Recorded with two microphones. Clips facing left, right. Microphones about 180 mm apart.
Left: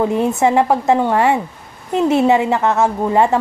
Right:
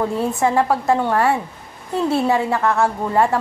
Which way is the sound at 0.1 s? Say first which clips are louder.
Left 4 dB; 20° left (ahead or behind).